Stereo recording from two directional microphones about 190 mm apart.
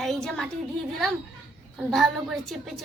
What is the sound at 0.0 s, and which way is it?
Speech, centre (ahead or behind).